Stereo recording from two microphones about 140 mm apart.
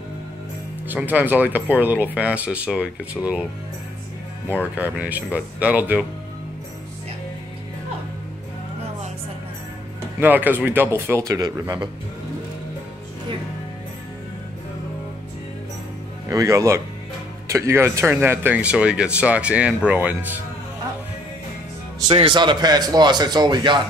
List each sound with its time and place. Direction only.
0.8 s speech: 10° right (ahead or behind)
4.7 s speech: 10° right (ahead or behind)
10.2 s speech: 15° right (ahead or behind)
16.3 s speech: 25° right (ahead or behind)
22.3 s speech: 35° right (ahead or behind)